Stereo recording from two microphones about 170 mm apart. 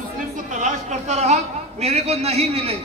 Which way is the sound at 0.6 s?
40° right (ahead or behind).